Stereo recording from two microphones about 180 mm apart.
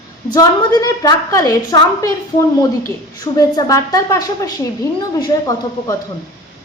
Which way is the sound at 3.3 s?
20° left (ahead or behind).